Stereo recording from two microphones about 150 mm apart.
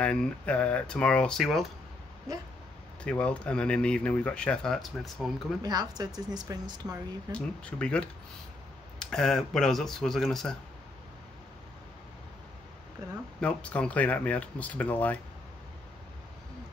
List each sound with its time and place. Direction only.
0.0 s speech: 5° left (ahead or behind)
3.0 s speech: 10° left (ahead or behind)
5.6 s speech: 25° right (ahead or behind)
7.3 s speech: 5° left (ahead or behind)
9.0 s speech: 5° left (ahead or behind)
13.4 s speech: 5° left (ahead or behind)